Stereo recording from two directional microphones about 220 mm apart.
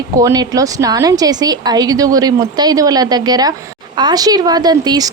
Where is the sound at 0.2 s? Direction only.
15° right (ahead or behind).